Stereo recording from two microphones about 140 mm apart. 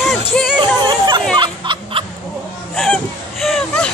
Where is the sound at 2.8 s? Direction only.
Centre (ahead or behind).